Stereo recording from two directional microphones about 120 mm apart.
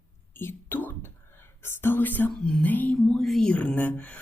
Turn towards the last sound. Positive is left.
turn(degrees=15)  # may be behind; listen again after turning